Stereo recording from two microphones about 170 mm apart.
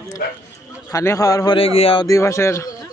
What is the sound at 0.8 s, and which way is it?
A man's voice, 20° left (ahead or behind).